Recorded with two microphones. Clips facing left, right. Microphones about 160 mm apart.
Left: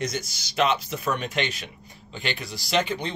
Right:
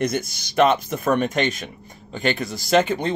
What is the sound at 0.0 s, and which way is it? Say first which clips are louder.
Speech: right 7 dB; 55° right (ahead or behind).